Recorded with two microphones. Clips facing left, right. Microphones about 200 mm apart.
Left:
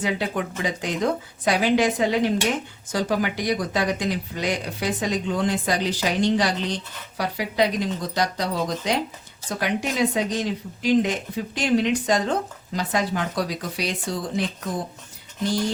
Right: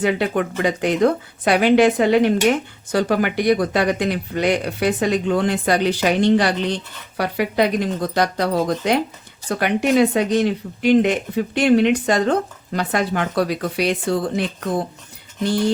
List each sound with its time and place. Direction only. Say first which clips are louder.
0.0 s speech: right 6 dB; 60° right (ahead or behind)